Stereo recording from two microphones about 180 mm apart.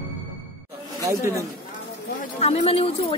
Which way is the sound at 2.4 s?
35° left (ahead or behind).